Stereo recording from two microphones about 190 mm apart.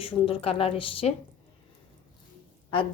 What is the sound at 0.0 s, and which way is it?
Speech, 30° left (ahead or behind).